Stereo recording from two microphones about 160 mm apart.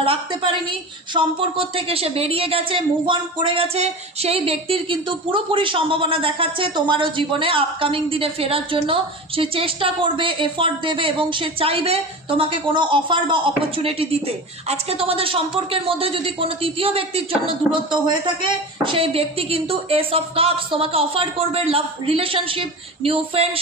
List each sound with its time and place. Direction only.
0.0 s a woman's voice: 35° right (ahead or behind)